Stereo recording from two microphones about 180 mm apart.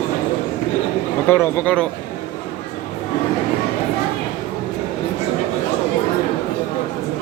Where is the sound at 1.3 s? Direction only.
10° left (ahead or behind).